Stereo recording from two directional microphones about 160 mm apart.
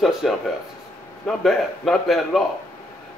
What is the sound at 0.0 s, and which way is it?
Speech, centre (ahead or behind).